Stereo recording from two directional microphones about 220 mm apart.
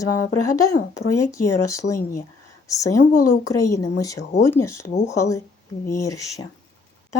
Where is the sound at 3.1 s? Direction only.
90° left.